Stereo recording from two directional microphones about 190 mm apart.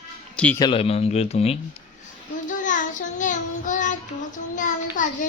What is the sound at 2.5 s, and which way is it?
Child singing, 40° left (ahead or behind).